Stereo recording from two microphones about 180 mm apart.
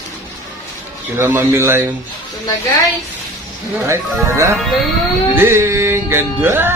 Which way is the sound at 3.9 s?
15° right (ahead or behind).